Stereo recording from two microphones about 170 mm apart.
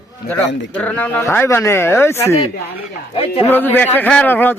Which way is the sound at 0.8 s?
10° left (ahead or behind).